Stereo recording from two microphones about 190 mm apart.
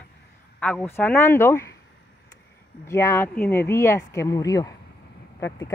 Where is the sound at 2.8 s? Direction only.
15° left (ahead or behind).